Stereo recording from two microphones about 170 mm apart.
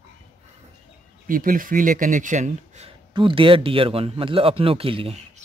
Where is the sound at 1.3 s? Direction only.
55° right (ahead or behind).